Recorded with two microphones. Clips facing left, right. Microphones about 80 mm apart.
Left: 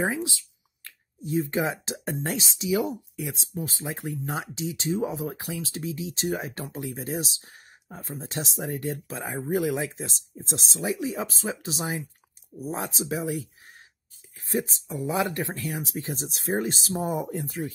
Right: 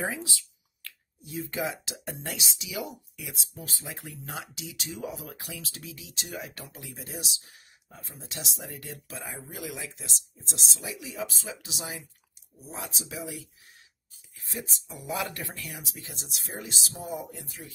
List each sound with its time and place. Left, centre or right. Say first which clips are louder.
0.0 s speech: left 6 dB; left
14.3 s a sound: left 11 dB; left
14.9 s speech: left 5 dB; left